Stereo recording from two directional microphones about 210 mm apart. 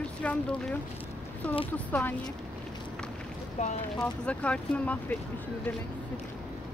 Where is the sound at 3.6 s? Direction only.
30° left (ahead or behind).